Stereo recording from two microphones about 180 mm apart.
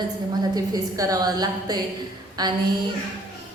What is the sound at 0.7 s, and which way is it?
A woman's voice, 20° right (ahead or behind).